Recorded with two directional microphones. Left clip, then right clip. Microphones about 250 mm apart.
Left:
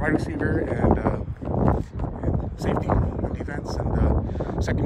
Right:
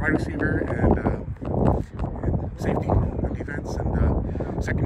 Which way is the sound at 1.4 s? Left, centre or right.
Right.